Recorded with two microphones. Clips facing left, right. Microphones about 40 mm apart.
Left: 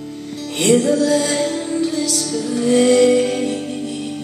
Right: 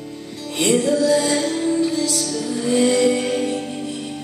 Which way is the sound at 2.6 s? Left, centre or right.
Left.